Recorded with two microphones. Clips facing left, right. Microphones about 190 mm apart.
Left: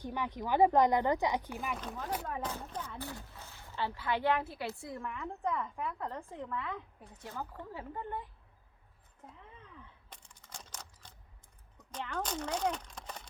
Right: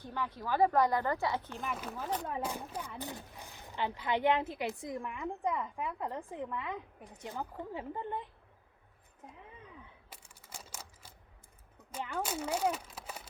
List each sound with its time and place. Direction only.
0.0 s speech: 15° left (ahead or behind)
1.6 s speech: centre (ahead or behind); by 8.3 s 20° right (ahead or behind)
10.1 s camera: 5° right (ahead or behind)
11.9 s speech: 10° right (ahead or behind)